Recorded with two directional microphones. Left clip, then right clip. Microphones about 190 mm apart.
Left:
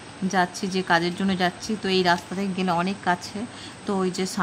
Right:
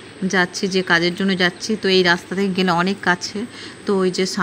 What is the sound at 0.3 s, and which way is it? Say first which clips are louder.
Speech: right 5 dB; 10° right (ahead or behind).